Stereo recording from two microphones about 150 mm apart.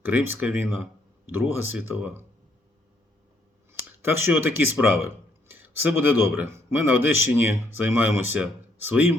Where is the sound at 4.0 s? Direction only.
15° right (ahead or behind).